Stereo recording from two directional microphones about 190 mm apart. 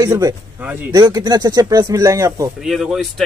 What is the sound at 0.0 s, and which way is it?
Speech, 20° right (ahead or behind).